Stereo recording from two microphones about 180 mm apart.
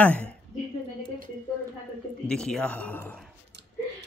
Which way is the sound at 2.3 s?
5° left (ahead or behind).